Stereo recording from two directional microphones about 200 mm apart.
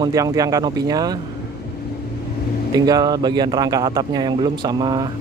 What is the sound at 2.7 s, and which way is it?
Speech, 20° right (ahead or behind).